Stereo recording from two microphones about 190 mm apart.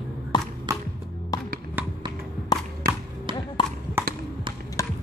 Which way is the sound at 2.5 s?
20° left (ahead or behind).